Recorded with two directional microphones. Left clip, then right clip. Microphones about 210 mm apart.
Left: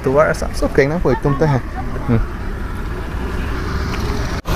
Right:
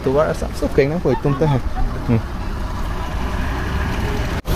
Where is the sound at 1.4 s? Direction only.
5° left (ahead or behind).